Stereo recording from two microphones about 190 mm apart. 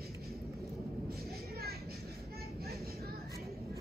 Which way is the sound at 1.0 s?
55° right (ahead or behind).